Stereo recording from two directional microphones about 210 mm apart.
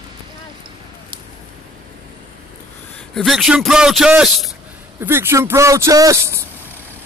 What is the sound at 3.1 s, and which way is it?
A man's voice, centre (ahead or behind).